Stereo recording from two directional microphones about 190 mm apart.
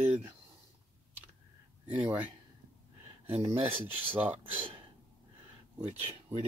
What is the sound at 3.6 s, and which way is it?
Speech, 10° right (ahead or behind).